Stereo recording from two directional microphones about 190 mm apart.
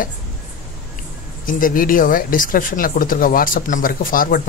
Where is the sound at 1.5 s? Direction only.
45° left (ahead or behind).